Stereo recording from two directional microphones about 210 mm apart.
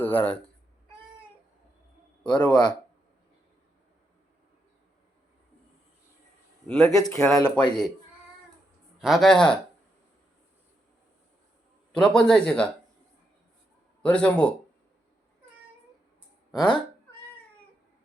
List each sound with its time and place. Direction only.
0.0 s speech: 10° left (ahead or behind)
2.2 s speech: 20° left (ahead or behind)
6.7 s a man's voice: 5° left (ahead or behind)
9.0 s a man's voice: centre (ahead or behind)
11.9 s a man's voice: 5° left (ahead or behind)
14.0 s a man's voice: 5° left (ahead or behind)
16.5 s speech: 20° left (ahead or behind)